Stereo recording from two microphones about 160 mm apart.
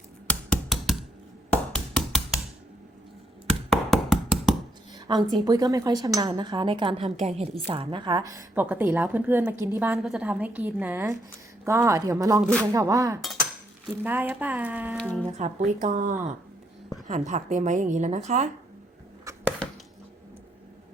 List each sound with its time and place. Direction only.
0.3 s a sound: 5° left (ahead or behind)
1.7 s knock: 5° left (ahead or behind)
3.7 s a sound: centre (ahead or behind)
4.9 s a woman's voice: 30° right (ahead or behind)
7.0 s a woman's voice: 45° right (ahead or behind); by 14.9 s 10° right (ahead or behind)
14.9 s speech: 5° left (ahead or behind)
15.3 s a woman's voice: 50° right (ahead or behind)
17.1 s a woman's voice: 50° right (ahead or behind)
19.2 s arrow: 20° right (ahead or behind)